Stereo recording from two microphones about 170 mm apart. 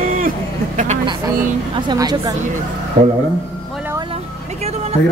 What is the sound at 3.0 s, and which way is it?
Speech, 45° right (ahead or behind).